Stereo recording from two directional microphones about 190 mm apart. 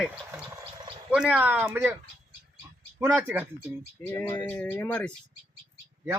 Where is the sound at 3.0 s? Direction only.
10° right (ahead or behind).